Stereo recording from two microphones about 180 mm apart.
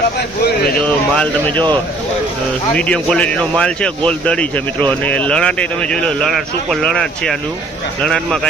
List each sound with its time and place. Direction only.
0.2 s speech: 65° left (ahead or behind)
1.1 s speech: 5° left (ahead or behind)
2.7 s speech: 5° left (ahead or behind)